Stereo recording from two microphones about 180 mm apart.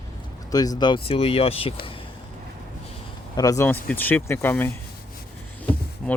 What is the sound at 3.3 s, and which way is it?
Speech, 20° left (ahead or behind).